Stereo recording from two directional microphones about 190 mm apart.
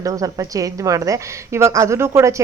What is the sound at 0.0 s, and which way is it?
A woman's voice, 20° right (ahead or behind).